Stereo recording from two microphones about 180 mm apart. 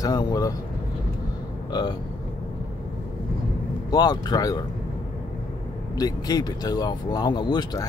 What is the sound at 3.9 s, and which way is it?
Speech, 20° left (ahead or behind).